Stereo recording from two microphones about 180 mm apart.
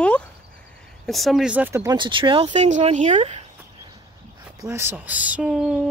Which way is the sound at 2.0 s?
25° right (ahead or behind).